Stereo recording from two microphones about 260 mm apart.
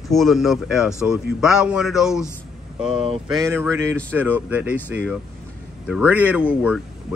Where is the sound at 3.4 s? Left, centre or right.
Centre.